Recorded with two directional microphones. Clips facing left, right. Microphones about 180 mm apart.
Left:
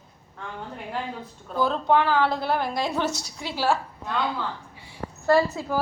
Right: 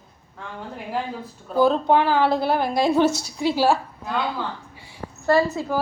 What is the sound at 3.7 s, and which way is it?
Speech, 10° right (ahead or behind).